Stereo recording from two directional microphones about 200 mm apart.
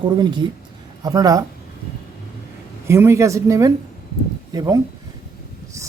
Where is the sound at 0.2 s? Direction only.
25° right (ahead or behind).